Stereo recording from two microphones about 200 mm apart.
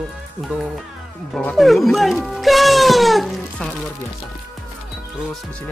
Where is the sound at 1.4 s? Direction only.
5° left (ahead or behind).